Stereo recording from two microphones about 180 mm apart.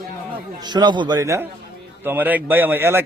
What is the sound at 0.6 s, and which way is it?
A man's voice, 25° right (ahead or behind).